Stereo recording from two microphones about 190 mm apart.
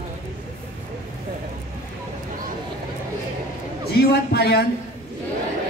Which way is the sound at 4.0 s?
60° left (ahead or behind).